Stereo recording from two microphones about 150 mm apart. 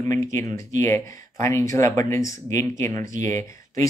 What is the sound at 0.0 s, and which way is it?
Speech, 20° left (ahead or behind).